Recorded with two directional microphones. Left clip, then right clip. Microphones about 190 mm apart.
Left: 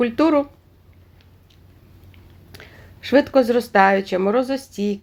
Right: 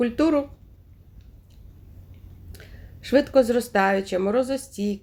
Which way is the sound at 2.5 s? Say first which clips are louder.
Left 6 dB; 30° left (ahead or behind).